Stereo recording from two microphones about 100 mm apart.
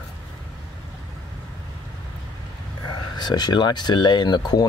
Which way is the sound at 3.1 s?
45° left (ahead or behind).